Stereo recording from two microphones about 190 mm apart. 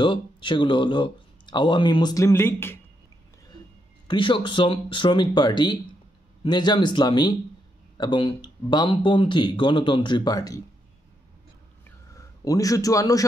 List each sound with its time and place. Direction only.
0.0 s speech: 25° left (ahead or behind)
4.1 s speech: 25° left (ahead or behind)
12.4 s a man's voice: 20° left (ahead or behind)